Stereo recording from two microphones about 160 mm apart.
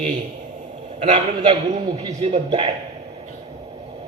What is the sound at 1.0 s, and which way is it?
A man's voice, 35° right (ahead or behind).